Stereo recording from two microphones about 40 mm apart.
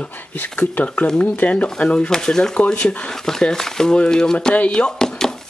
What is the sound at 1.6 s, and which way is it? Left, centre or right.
Speech, centre.